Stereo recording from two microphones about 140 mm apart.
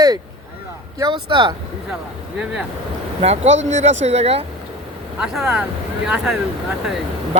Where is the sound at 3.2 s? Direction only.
50° right (ahead or behind).